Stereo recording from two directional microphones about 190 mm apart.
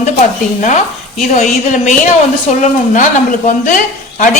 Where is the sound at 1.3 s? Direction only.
40° left (ahead or behind).